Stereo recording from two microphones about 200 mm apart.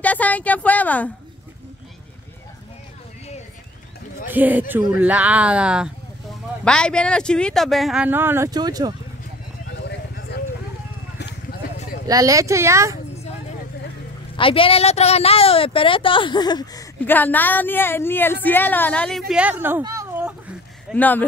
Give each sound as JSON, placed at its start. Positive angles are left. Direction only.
{"t": 0.0, "sound": "a woman's voice", "side_deg": 5}
{"t": 4.3, "sound": "speech", "side_deg": -10}
{"t": 6.6, "sound": "speech", "side_deg": 5}
{"t": 9.7, "sound": "vehicle", "side_deg": 55}
{"t": 12.1, "sound": "speech", "side_deg": -15}
{"t": 14.3, "sound": "a woman's voice", "side_deg": 25}
{"t": 17.0, "sound": "a woman's voice", "side_deg": 10}
{"t": 19.6, "sound": "speech", "side_deg": -15}
{"t": 20.9, "sound": "a woman's voice", "side_deg": 10}